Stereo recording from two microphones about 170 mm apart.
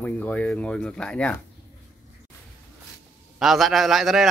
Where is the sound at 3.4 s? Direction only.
Centre (ahead or behind).